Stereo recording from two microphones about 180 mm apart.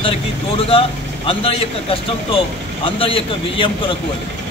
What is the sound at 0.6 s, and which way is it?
Speech, 30° left (ahead or behind).